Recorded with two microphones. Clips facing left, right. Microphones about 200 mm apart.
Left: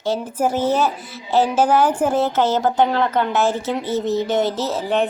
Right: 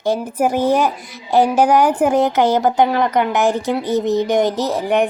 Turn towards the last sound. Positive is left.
turn(degrees=-15)  # may be behind; listen again after turning